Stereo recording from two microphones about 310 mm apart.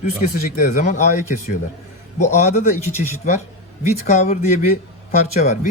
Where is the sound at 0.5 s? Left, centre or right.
Left.